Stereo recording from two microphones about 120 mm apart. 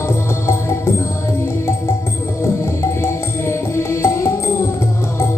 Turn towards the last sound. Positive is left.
turn(degrees=20)  # may be behind; listen again after turning